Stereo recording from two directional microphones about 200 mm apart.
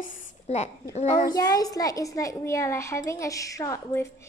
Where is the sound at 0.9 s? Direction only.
35° left (ahead or behind).